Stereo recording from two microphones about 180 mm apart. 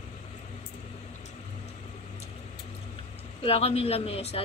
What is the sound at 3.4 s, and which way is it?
Speech, 35° left (ahead or behind).